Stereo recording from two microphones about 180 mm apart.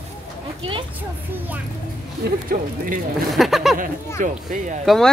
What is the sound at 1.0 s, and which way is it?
Speech, 10° right (ahead or behind).